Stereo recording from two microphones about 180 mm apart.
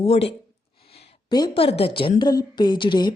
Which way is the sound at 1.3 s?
25° left (ahead or behind).